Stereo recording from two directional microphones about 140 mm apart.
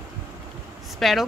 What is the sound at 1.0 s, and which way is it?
Speech, centre (ahead or behind).